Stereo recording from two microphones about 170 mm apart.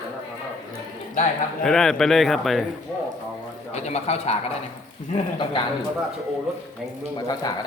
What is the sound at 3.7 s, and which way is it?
Speech, 40° left (ahead or behind).